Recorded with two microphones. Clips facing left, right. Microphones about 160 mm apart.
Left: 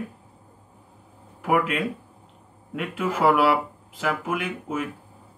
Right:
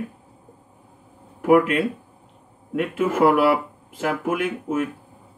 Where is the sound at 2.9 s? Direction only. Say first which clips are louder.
Right 3 dB; 50° right (ahead or behind).